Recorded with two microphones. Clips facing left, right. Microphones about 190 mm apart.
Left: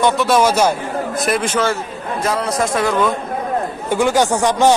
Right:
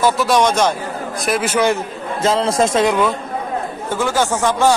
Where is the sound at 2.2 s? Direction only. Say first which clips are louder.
Right 4 dB; 25° right (ahead or behind).